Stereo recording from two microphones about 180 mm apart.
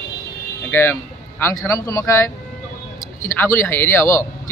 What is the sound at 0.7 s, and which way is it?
Speech, 10° left (ahead or behind).